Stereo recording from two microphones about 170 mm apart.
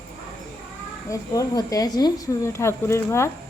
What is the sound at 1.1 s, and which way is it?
Speech, 20° left (ahead or behind).